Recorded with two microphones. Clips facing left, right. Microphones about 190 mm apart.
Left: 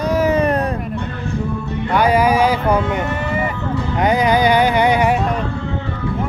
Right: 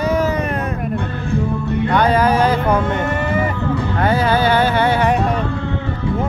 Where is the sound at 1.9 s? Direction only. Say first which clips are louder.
Left 1 dB; 10° left (ahead or behind).